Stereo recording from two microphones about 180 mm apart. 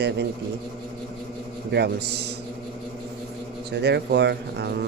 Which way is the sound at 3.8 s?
70° right (ahead or behind).